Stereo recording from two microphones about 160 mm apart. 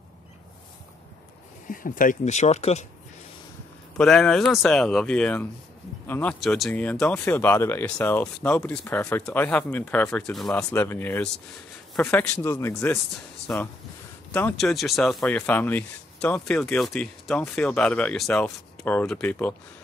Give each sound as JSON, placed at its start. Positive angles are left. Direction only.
{"t": 1.7, "sound": "speech", "side_deg": 60}
{"t": 4.0, "sound": "speech", "side_deg": 0}
{"t": 6.4, "sound": "speech", "side_deg": 0}